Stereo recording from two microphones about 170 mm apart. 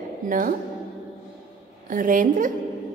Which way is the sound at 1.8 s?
50° right (ahead or behind).